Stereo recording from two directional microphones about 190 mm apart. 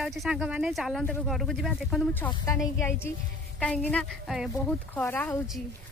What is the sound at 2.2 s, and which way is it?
A woman's voice, 15° left (ahead or behind).